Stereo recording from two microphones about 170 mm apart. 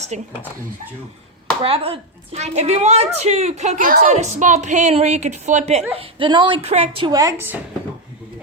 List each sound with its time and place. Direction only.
0.1 s speech: 45° right (ahead or behind)
1.6 s a woman's voice: 35° right (ahead or behind)
7.1 s a woman's voice: 20° right (ahead or behind)